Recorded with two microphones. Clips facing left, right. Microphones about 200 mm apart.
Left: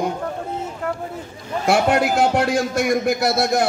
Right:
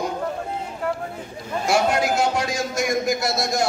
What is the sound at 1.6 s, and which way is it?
A man's voice, 60° left (ahead or behind).